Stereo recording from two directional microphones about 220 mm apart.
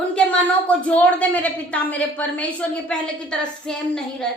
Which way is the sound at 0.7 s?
5° left (ahead or behind).